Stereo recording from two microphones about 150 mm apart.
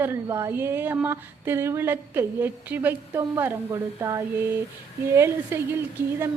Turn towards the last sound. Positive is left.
turn(degrees=-15)  # may be behind; listen again after turning